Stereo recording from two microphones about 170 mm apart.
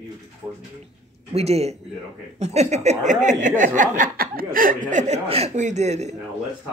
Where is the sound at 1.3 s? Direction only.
40° right (ahead or behind).